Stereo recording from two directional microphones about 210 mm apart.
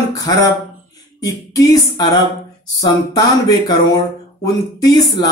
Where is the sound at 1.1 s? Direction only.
15° left (ahead or behind).